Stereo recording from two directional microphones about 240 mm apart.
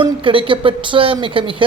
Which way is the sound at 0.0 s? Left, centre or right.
Right.